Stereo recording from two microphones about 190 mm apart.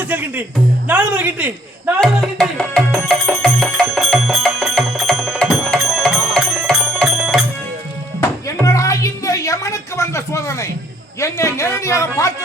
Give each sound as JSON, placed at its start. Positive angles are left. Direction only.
{"t": 0.0, "sound": "a man's voice", "side_deg": -10}
{"t": 2.0, "sound": "music", "side_deg": 5}
{"t": 8.2, "sound": "a sound", "side_deg": 15}
{"t": 11.2, "sound": "a man's voice", "side_deg": 15}